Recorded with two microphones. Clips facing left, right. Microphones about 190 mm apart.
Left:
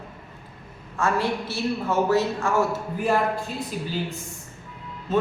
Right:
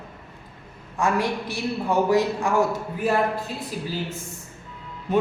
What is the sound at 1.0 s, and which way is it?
A man's voice, 15° right (ahead or behind).